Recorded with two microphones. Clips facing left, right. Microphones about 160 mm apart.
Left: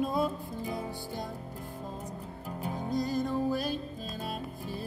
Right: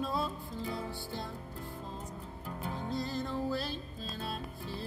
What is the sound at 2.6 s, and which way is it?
Music, 45° left (ahead or behind).